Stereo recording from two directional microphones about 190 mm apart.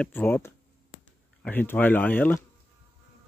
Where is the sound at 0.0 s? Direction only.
10° left (ahead or behind).